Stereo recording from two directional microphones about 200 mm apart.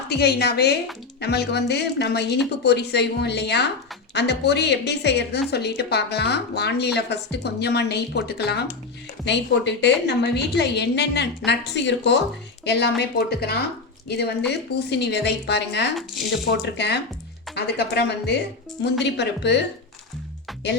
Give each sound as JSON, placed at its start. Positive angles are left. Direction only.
{"t": 0.1, "sound": "a woman's voice", "side_deg": 55}